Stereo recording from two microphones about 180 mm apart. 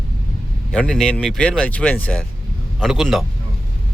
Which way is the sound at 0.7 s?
5° left (ahead or behind).